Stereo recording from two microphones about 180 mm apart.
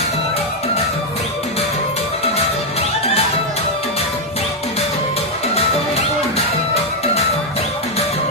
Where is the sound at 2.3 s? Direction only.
35° left (ahead or behind).